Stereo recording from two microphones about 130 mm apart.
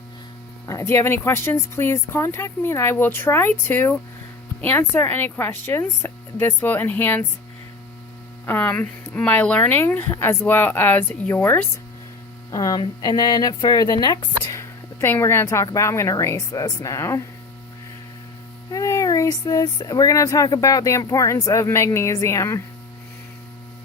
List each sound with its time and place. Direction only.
0.7 s speech: 25° left (ahead or behind)
8.4 s speech: 15° left (ahead or behind)
12.5 s speech: 30° left (ahead or behind)
15.0 s speech: 20° left (ahead or behind)
18.7 s speech: 25° left (ahead or behind)